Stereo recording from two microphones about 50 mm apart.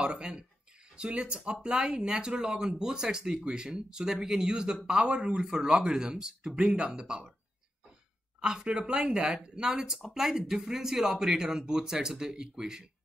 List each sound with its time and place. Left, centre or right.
0.0 s speech: centre
8.4 s speech: centre